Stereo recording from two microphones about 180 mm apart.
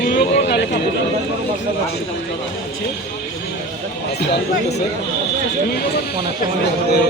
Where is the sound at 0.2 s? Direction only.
60° left (ahead or behind).